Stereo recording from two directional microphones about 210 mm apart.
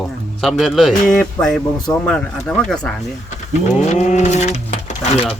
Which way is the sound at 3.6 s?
35° left (ahead or behind).